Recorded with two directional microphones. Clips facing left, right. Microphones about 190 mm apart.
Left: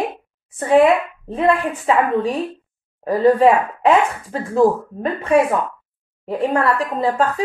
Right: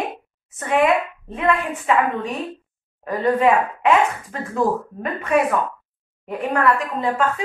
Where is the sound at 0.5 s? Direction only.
35° left (ahead or behind).